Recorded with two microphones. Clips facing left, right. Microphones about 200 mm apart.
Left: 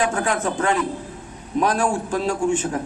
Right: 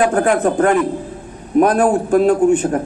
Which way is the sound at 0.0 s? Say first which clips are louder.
Right 8 dB; 55° right (ahead or behind).